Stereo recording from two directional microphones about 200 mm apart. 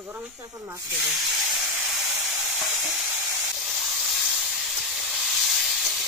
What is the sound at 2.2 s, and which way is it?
Frying, 10° right (ahead or behind).